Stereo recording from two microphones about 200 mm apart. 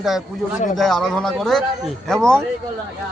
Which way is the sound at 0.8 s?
Centre (ahead or behind).